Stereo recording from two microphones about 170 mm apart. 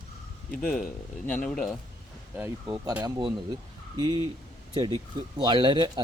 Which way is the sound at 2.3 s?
10° right (ahead or behind).